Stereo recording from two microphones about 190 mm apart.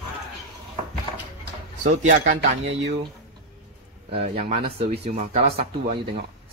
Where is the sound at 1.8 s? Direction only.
40° right (ahead or behind).